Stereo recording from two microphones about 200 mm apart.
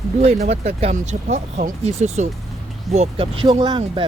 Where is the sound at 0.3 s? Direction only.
35° right (ahead or behind).